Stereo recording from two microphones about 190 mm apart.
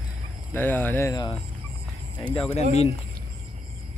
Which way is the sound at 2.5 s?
35° left (ahead or behind).